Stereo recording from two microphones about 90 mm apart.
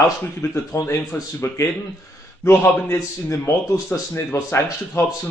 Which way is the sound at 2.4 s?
25° left (ahead or behind).